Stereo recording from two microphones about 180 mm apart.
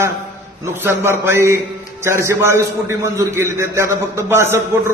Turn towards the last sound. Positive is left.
turn(degrees=-15)  # may be behind; listen again after turning